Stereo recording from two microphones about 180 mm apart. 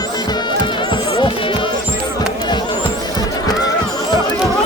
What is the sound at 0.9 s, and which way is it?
Music, 25° left (ahead or behind).